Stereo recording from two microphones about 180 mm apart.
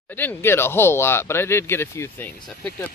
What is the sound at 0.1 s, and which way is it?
Speech, 10° left (ahead or behind).